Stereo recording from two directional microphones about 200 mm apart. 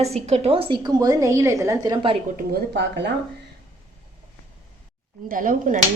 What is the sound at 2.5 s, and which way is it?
Speech, 60° right (ahead or behind).